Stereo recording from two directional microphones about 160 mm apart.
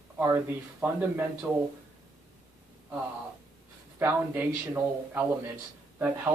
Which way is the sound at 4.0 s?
15° right (ahead or behind).